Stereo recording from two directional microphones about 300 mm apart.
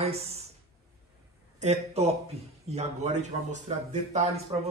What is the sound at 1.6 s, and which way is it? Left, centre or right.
Speech, right.